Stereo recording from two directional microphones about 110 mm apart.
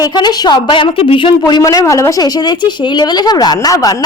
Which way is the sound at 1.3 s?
40° left (ahead or behind).